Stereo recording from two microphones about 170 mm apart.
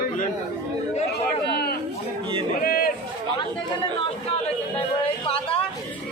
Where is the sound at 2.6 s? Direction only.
60° left (ahead or behind).